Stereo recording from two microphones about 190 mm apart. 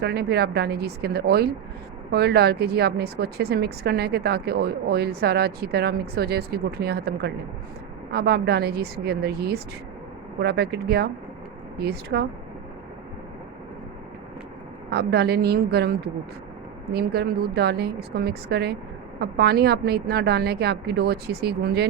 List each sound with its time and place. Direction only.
0.0 s a woman's voice: 55° right (ahead or behind)
14.8 s a woman's voice: 60° right (ahead or behind)